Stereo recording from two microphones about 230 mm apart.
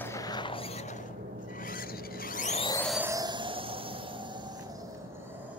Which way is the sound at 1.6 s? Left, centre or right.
Left.